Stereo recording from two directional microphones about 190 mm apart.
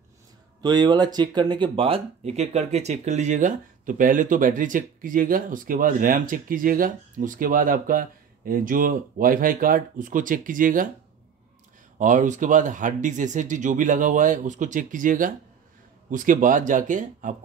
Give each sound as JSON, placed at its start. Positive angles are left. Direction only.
{"t": 0.6, "sound": "speech", "side_deg": -20}
{"t": 12.0, "sound": "speech", "side_deg": -40}